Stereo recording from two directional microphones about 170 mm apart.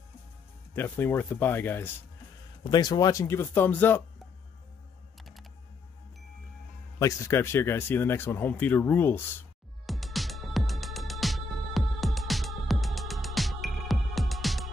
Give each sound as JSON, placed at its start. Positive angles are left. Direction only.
{"t": 0.7, "sound": "speech", "side_deg": 10}
{"t": 2.6, "sound": "speech", "side_deg": 25}
{"t": 7.0, "sound": "speech", "side_deg": 20}
{"t": 9.8, "sound": "music", "side_deg": 0}